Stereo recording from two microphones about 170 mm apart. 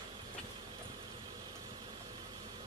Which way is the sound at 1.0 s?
25° right (ahead or behind).